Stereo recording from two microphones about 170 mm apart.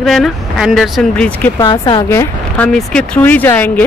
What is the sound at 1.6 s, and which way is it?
A woman's voice, 25° left (ahead or behind).